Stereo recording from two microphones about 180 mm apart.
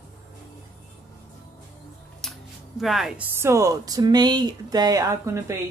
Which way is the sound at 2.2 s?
5° left (ahead or behind).